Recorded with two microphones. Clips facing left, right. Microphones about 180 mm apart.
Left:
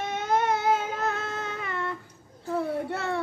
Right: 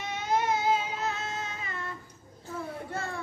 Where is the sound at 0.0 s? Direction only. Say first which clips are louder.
Left 3 dB; 55° left (ahead or behind).